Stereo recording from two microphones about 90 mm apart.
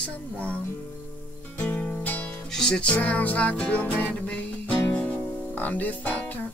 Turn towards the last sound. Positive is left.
turn(degrees=20)  # may be behind; listen again after turning